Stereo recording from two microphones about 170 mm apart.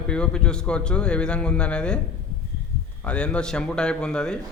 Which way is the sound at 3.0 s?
5° left (ahead or behind).